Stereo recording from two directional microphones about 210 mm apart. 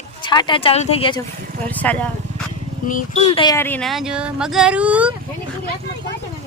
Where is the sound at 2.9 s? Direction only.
35° left (ahead or behind).